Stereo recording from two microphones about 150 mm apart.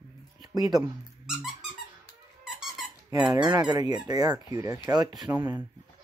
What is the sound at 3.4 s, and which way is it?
Speech, 30° right (ahead or behind).